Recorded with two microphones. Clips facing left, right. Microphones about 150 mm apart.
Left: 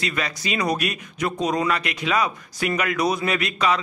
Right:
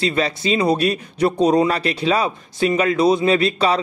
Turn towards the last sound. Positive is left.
turn(degrees=-30)  # may be behind; listen again after turning